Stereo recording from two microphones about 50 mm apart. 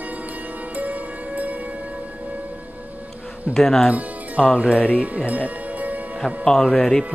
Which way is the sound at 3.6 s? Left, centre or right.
Centre.